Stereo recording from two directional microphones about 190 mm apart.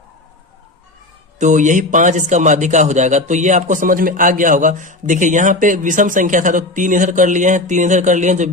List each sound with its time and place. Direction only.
1.4 s a man's voice: 40° right (ahead or behind)